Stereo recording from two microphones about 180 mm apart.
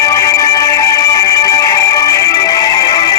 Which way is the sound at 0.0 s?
20° left (ahead or behind).